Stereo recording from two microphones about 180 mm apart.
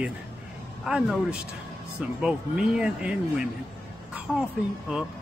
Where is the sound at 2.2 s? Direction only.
5° right (ahead or behind).